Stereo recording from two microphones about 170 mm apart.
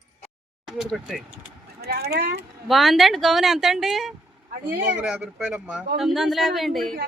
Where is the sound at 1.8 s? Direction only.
70° right (ahead or behind).